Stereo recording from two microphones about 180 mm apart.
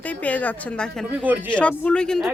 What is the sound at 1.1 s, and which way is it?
Speech, 10° right (ahead or behind).